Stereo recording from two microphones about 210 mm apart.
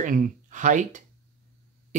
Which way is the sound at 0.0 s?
35° right (ahead or behind).